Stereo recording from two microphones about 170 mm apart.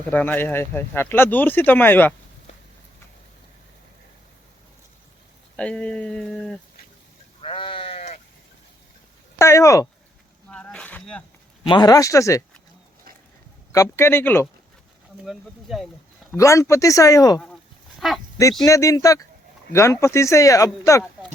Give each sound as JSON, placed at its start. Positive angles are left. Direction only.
{"t": 0.1, "sound": "speech", "side_deg": 10}
{"t": 5.5, "sound": "speech", "side_deg": 5}
{"t": 7.4, "sound": "sheep", "side_deg": 30}
{"t": 9.4, "sound": "speech", "side_deg": 15}
{"t": 10.5, "sound": "a sound", "side_deg": 5}
{"t": 11.7, "sound": "speech", "side_deg": 25}
{"t": 13.7, "sound": "speech", "side_deg": 15}
{"t": 15.2, "sound": "speech", "side_deg": 0}
{"t": 16.3, "sound": "speech", "side_deg": 15}
{"t": 18.0, "sound": "speech", "side_deg": 0}
{"t": 18.6, "sound": "speech", "side_deg": 20}